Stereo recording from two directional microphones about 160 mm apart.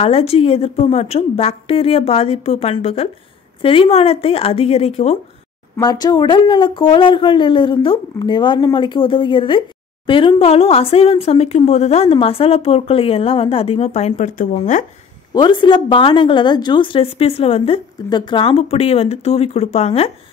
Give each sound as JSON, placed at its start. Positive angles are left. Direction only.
{"t": 0.0, "sound": "a woman's voice", "side_deg": 40}
{"t": 5.8, "sound": "a woman's voice", "side_deg": 25}
{"t": 15.3, "sound": "a woman's voice", "side_deg": 30}